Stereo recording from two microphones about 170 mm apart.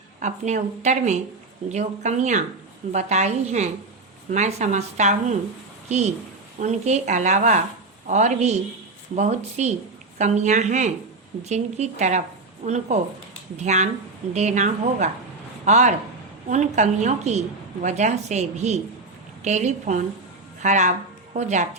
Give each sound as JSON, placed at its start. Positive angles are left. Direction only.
{"t": 0.2, "sound": "a woman's voice", "side_deg": -45}
{"t": 6.6, "sound": "a woman's voice", "side_deg": -45}